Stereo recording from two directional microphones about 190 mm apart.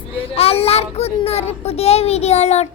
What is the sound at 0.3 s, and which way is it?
A child's voice, 30° left (ahead or behind).